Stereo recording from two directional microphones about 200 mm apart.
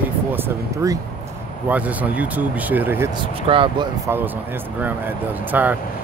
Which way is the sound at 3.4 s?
25° right (ahead or behind).